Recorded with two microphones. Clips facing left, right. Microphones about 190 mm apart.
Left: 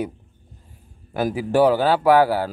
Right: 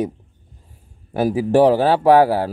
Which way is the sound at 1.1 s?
30° right (ahead or behind).